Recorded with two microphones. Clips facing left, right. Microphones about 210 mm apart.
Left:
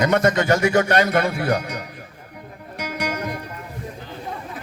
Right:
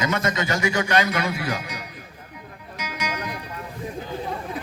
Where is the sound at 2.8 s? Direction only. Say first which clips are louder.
Left 4 dB; 55° left (ahead or behind).